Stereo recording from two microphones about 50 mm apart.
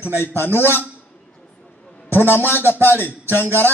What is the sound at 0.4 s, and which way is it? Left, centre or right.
Speech, left.